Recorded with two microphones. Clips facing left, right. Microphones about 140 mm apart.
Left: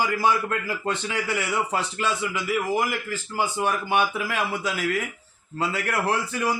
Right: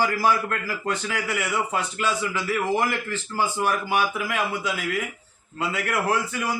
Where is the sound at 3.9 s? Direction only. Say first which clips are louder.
Left 1 dB; 25° left (ahead or behind).